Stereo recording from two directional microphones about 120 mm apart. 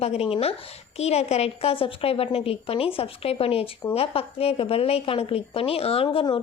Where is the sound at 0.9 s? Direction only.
60° left (ahead or behind).